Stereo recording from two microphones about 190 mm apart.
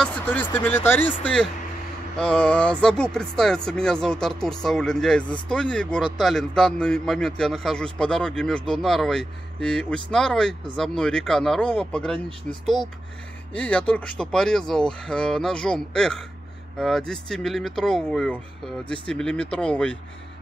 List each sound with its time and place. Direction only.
0.0 s speech: 5° left (ahead or behind)
13.5 s speech: 5° left (ahead or behind)